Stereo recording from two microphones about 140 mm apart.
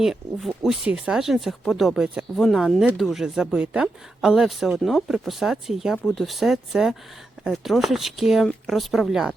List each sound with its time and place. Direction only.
0.0 s speech: centre (ahead or behind)